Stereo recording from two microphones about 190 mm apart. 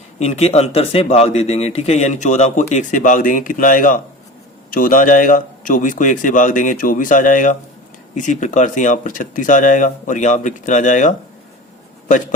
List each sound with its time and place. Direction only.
0.2 s a man's voice: 35° left (ahead or behind)